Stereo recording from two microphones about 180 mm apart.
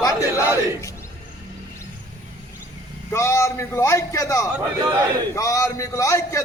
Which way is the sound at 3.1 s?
15° left (ahead or behind).